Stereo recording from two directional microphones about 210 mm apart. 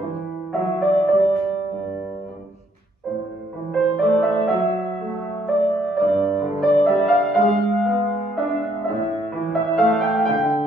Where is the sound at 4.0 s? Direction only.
Centre (ahead or behind).